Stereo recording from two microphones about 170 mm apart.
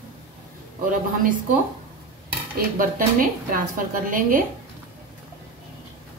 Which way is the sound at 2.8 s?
55° right (ahead or behind).